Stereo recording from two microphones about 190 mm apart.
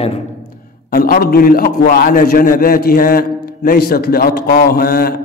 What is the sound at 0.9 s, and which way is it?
A man's voice, 50° left (ahead or behind).